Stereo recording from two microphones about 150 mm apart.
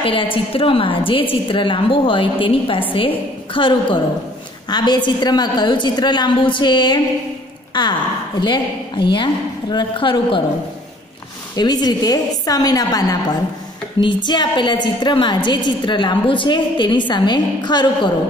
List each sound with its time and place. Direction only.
0.0 s a woman's voice: 35° left (ahead or behind)
11.5 s a woman's voice: 25° left (ahead or behind)